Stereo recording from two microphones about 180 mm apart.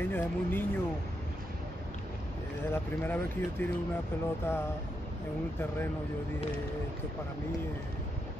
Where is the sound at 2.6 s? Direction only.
10° left (ahead or behind).